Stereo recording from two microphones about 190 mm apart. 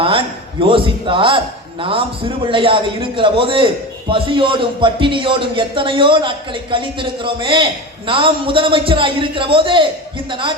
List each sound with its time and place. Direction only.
0.0 s speech: 30° right (ahead or behind)